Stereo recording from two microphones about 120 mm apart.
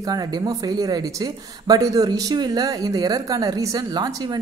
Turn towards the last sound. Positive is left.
turn(degrees=-35)  # may be behind; listen again after turning